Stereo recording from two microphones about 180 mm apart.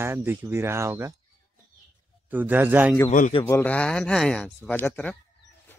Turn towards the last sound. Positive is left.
turn(degrees=10)  # may be behind; listen again after turning